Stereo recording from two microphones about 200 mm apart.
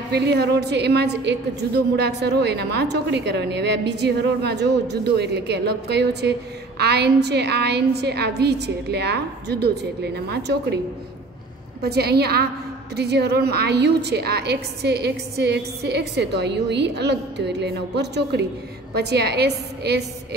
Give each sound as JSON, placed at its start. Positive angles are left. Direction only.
{"t": 0.1, "sound": "a woman's voice", "side_deg": -55}
{"t": 11.8, "sound": "a woman's voice", "side_deg": -55}